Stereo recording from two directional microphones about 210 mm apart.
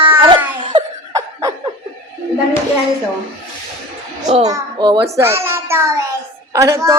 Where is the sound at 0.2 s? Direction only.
25° right (ahead or behind).